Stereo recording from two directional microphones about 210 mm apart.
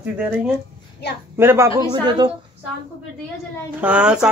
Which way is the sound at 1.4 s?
10° right (ahead or behind).